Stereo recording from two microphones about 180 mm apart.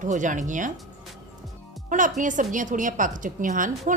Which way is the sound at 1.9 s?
45° right (ahead or behind).